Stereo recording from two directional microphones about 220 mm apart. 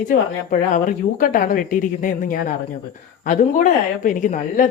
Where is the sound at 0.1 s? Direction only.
35° left (ahead or behind).